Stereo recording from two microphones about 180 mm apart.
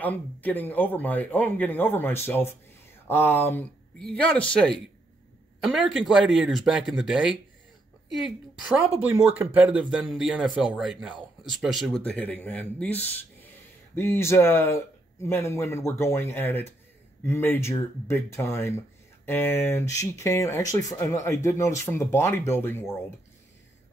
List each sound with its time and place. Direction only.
0.0 s speech: 10° left (ahead or behind)